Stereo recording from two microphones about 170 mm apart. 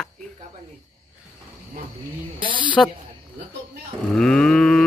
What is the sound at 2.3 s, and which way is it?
Speech, 30° right (ahead or behind).